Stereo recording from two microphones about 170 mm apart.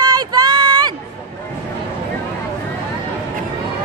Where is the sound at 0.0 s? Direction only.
25° right (ahead or behind).